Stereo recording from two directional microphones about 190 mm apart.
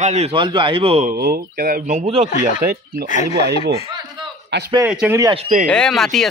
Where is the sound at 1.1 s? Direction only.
50° right (ahead or behind); by 2.2 s 35° right (ahead or behind).